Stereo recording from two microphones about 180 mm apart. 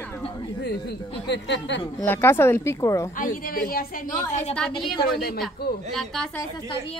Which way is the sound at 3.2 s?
50° left (ahead or behind).